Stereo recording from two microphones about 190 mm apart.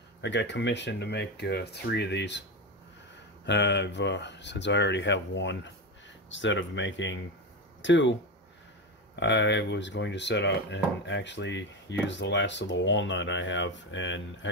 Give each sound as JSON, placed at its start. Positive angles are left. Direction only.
{"t": 0.2, "sound": "speech", "side_deg": 70}
{"t": 3.4, "sound": "speech", "side_deg": 65}